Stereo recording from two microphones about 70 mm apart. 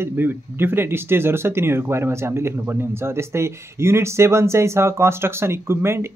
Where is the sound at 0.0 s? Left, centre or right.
Right.